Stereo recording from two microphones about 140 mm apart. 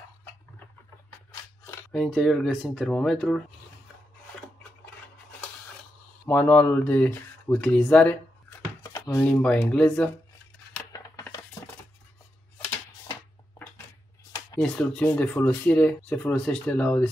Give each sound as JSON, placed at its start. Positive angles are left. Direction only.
{"t": 1.9, "sound": "speech", "side_deg": 5}
{"t": 6.2, "sound": "speech", "side_deg": 10}
{"t": 8.8, "sound": "speech", "side_deg": 20}
{"t": 10.9, "sound": "a sound", "side_deg": 25}
{"t": 14.6, "sound": "speech", "side_deg": 5}